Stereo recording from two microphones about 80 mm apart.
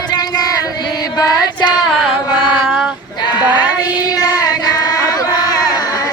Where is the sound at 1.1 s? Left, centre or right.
Left.